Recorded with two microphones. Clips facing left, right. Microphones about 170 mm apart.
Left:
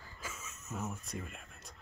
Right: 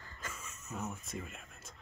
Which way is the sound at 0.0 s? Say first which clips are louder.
Even; 5° left (ahead or behind).